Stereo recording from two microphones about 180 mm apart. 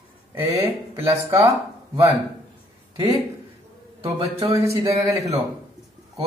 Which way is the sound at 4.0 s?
20° right (ahead or behind).